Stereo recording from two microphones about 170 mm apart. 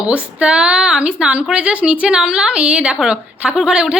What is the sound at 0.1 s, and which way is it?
A woman's voice, 5° right (ahead or behind).